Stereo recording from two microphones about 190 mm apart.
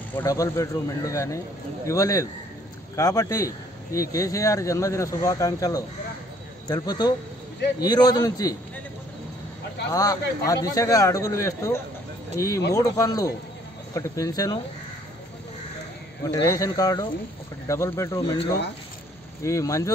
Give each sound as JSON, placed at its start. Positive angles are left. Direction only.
{"t": 0.1, "sound": "a man's voice", "side_deg": 15}
{"t": 9.9, "sound": "a man's voice", "side_deg": 20}
{"t": 16.3, "sound": "speech", "side_deg": 15}
{"t": 19.4, "sound": "speech", "side_deg": 15}